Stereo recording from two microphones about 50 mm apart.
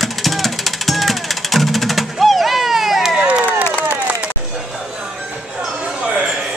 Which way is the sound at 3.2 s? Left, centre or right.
Right.